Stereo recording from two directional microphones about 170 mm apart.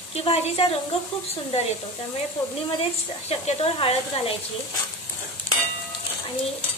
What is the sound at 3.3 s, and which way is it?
A woman's voice, 35° left (ahead or behind).